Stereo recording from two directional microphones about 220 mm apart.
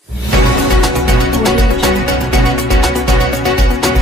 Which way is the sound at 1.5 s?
Centre (ahead or behind).